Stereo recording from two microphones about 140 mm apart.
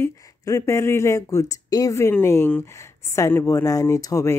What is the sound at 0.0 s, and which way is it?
Speech, 20° left (ahead or behind).